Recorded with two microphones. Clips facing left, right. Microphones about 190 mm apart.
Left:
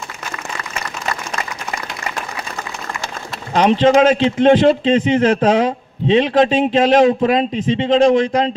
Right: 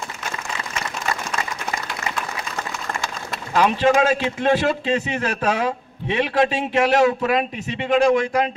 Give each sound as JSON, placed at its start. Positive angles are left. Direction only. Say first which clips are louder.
{"t": 3.5, "sound": "a man's voice", "louder": "left 5 dB", "side_deg": 20}